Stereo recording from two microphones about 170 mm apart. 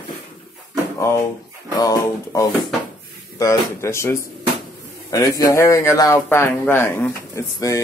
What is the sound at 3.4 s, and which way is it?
Speech, 15° left (ahead or behind).